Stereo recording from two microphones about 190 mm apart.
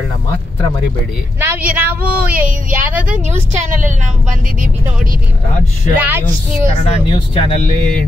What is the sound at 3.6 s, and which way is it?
Speech, 40° right (ahead or behind).